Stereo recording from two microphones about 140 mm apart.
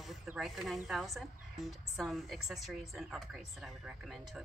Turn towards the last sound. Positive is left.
turn(degrees=-5)  # may be behind; listen again after turning